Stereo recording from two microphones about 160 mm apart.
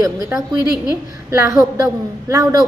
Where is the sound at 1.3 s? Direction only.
15° right (ahead or behind).